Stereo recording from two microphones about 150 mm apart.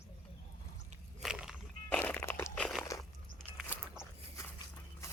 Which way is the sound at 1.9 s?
10° left (ahead or behind).